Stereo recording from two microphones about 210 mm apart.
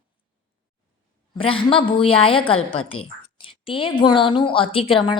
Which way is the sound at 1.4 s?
25° left (ahead or behind).